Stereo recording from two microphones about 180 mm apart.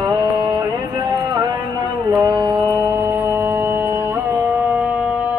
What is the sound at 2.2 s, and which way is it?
Mantra, 20° right (ahead or behind).